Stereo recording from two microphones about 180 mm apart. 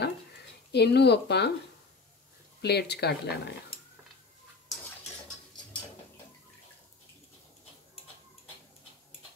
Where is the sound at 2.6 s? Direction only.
65° left (ahead or behind).